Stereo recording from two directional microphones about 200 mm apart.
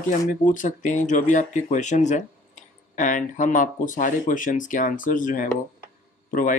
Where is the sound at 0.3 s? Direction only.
40° left (ahead or behind).